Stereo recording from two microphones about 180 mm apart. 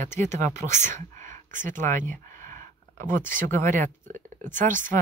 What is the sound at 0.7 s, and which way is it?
Speech, 15° left (ahead or behind).